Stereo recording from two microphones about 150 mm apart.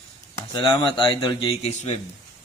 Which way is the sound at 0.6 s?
35° left (ahead or behind).